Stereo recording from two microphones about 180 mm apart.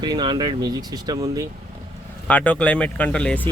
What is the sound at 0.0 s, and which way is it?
Speech, 25° right (ahead or behind).